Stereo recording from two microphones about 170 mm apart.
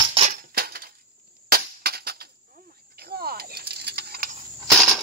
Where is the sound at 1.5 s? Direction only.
65° right (ahead or behind).